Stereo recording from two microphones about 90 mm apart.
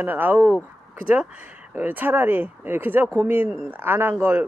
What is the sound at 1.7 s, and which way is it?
Speech, 20° right (ahead or behind).